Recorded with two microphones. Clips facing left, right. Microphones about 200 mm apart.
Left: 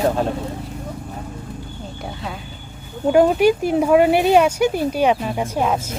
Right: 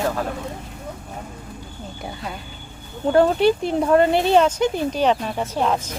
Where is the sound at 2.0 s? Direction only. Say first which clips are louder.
Left 1 dB; centre (ahead or behind).